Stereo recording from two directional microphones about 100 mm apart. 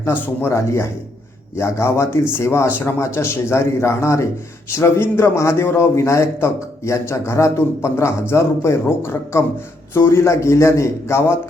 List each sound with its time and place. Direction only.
0.4 s a man's voice: 25° left (ahead or behind)